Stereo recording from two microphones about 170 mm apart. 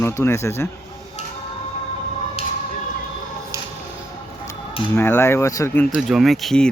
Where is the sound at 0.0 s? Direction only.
15° left (ahead or behind).